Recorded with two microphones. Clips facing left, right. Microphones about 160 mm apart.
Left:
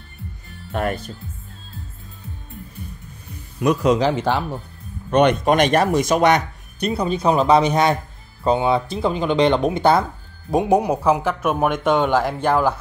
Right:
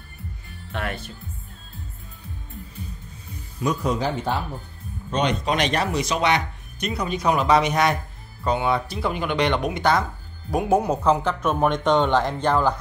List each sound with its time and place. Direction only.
0.7 s speech: 45° left (ahead or behind)
3.6 s speech: 90° left
5.1 s speech: 55° left (ahead or behind)
6.8 s speech: 30° left (ahead or behind); by 12.7 s 10° left (ahead or behind)